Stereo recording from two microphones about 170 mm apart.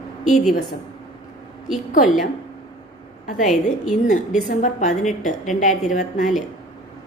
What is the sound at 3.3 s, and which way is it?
A woman's voice, 45° left (ahead or behind).